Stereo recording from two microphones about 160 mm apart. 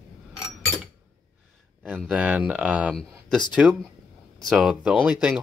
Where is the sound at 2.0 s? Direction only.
10° right (ahead or behind).